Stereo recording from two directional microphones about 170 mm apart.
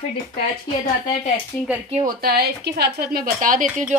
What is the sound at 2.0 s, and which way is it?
Speech, 65° right (ahead or behind).